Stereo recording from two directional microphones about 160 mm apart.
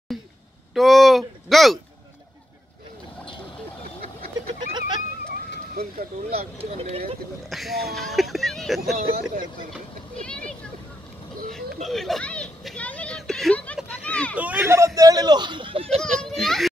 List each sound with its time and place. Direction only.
0.1 s a sound: centre (ahead or behind)
0.7 s speech: centre (ahead or behind)
6.3 s speech: 40° right (ahead or behind)
7.4 s speech: centre (ahead or behind)
8.9 s speech: 60° right (ahead or behind)
11.5 s hubbub: centre (ahead or behind)
13.8 s a sound: 10° left (ahead or behind)
14.3 s speech: 10° right (ahead or behind); by 16.0 s 35° right (ahead or behind)
16.0 s speech: 5° left (ahead or behind)